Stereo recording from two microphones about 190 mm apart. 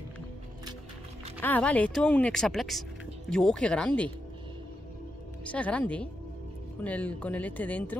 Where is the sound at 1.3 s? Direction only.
10° left (ahead or behind).